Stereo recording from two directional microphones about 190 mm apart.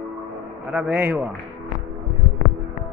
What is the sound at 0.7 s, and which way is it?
Speech, 5° right (ahead or behind).